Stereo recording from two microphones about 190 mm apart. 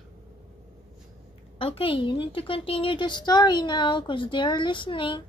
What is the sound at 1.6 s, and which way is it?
A woman's voice, 30° left (ahead or behind).